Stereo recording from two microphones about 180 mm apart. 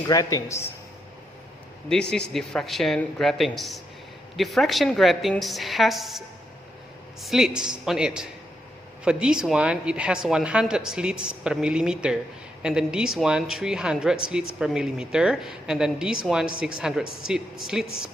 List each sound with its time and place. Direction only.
0.1 s a man's voice: 20° left (ahead or behind)
1.9 s speech: 5° left (ahead or behind)